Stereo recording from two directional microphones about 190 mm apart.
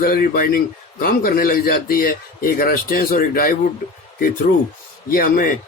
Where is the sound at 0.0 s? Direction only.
50° left (ahead or behind).